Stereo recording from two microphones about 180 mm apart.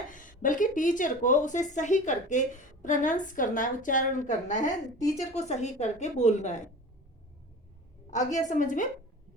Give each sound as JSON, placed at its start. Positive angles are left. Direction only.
{"t": 0.1, "sound": "a woman's voice", "side_deg": 50}
{"t": 8.1, "sound": "a woman's voice", "side_deg": 45}